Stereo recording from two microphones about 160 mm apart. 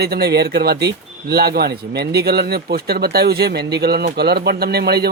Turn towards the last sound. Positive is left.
turn(degrees=-85)